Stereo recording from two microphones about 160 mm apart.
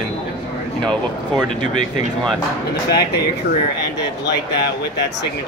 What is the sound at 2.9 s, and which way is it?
Speech, 90° left.